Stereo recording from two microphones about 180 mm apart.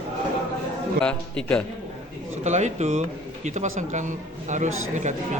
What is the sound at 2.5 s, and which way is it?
Speech, 40° right (ahead or behind).